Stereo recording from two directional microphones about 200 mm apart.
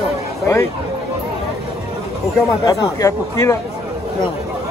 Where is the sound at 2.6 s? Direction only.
15° left (ahead or behind).